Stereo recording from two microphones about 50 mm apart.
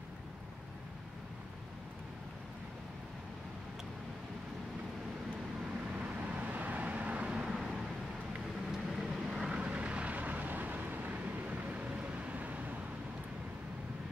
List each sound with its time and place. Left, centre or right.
5.9 s vehicle: right
7.3 s vehicle: centre
8.7 s vehicle: centre
9.6 s vehicle: right